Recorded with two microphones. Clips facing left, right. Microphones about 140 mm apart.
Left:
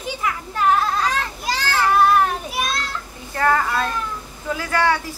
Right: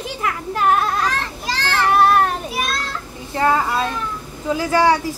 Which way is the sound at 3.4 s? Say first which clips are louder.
Right 2 dB; 20° right (ahead or behind).